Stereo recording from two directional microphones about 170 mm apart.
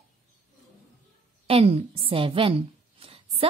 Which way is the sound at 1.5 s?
35° right (ahead or behind).